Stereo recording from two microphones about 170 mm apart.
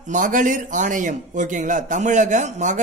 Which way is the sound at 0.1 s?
50° right (ahead or behind).